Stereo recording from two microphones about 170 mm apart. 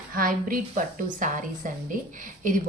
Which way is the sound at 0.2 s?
55° right (ahead or behind).